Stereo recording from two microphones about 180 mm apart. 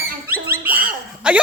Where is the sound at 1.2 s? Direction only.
5° right (ahead or behind).